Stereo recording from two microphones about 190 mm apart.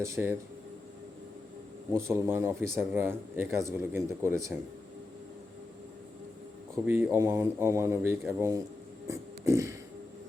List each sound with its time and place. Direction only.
0.0 s a man's voice: 15° right (ahead or behind)
1.9 s a man's voice: 15° right (ahead or behind)
6.8 s a man's voice: 10° right (ahead or behind)
9.0 s a sound: 15° right (ahead or behind)